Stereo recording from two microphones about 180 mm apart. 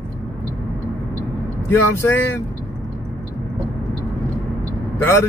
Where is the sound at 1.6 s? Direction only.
15° left (ahead or behind).